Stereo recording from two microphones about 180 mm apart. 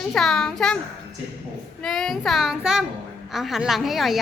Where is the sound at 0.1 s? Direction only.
5° left (ahead or behind).